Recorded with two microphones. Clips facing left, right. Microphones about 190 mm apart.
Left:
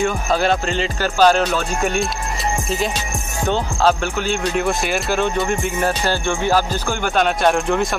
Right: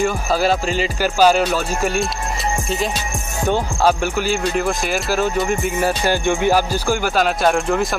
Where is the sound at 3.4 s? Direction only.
10° right (ahead or behind).